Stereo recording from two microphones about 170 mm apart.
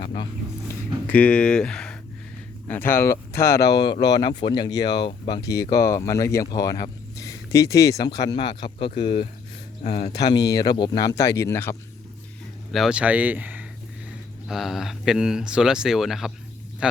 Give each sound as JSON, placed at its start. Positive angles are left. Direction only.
{"t": 0.0, "sound": "speech", "side_deg": 30}
{"t": 1.0, "sound": "speech", "side_deg": 10}
{"t": 10.1, "sound": "speech", "side_deg": 25}
{"t": 12.7, "sound": "speech", "side_deg": -5}